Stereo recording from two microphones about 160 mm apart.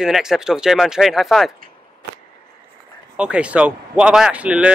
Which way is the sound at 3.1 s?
5° right (ahead or behind).